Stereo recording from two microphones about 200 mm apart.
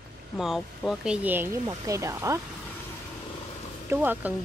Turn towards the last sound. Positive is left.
turn(degrees=-10)  # may be behind; listen again after turning